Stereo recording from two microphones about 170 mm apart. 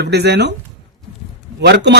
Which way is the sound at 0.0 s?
70° right (ahead or behind).